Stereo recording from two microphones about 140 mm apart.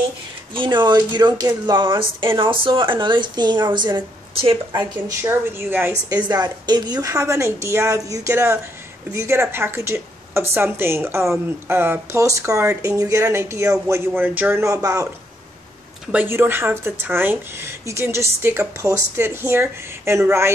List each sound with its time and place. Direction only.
0.6 s a woman's voice: 35° right (ahead or behind)
5.2 s speech: 15° right (ahead or behind)
6.2 s a woman's voice: 30° right (ahead or behind)
16.1 s speech: 15° right (ahead or behind)